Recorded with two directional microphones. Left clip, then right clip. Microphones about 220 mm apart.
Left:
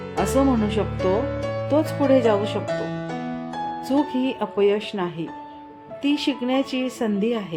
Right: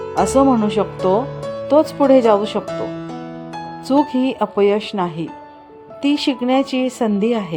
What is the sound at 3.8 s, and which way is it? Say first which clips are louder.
Speech: right 8 dB; 20° right (ahead or behind).